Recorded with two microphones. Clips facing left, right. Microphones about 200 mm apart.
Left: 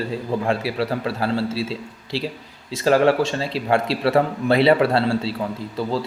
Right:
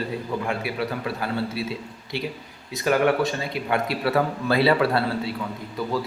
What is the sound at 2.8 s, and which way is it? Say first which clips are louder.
Speech: left 4 dB; 30° left (ahead or behind).